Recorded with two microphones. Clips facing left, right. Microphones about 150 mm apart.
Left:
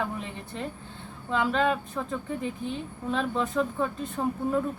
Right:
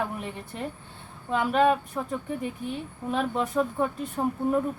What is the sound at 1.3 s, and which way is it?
Speech, 10° right (ahead or behind).